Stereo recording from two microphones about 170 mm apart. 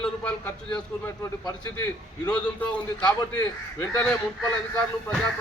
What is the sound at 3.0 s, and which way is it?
Speech, 25° left (ahead or behind).